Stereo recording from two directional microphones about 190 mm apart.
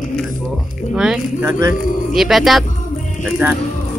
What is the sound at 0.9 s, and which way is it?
Speech, 5° right (ahead or behind).